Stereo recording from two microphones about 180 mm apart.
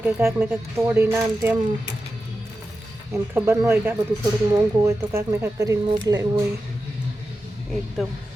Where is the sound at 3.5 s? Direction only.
15° right (ahead or behind).